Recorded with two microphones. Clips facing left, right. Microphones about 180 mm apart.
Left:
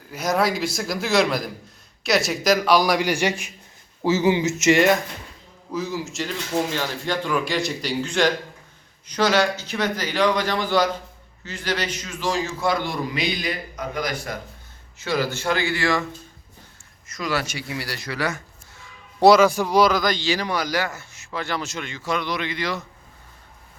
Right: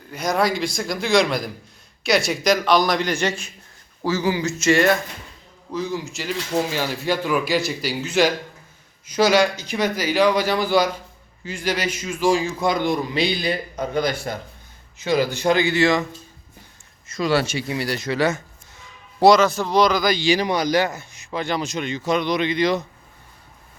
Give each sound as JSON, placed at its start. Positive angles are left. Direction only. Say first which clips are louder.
{"t": 0.1, "sound": "speech", "louder": "right 1 dB", "side_deg": 5}
{"t": 5.7, "sound": "a man's voice", "louder": "right 1 dB", "side_deg": 5}
{"t": 13.1, "sound": "a man's voice", "louder": "right 4 dB", "side_deg": -30}
{"t": 14.9, "sound": "a man's voice", "louder": "right 4 dB", "side_deg": -20}
{"t": 17.1, "sound": "a man's voice", "louder": "right 6 dB", "side_deg": -30}
{"t": 19.2, "sound": "a man's voice", "louder": "even", "side_deg": 5}